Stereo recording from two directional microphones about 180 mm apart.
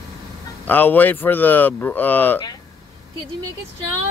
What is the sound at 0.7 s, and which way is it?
Speech, 10° left (ahead or behind).